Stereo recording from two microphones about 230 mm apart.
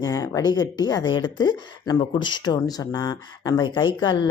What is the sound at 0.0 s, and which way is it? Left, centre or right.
Speech, centre.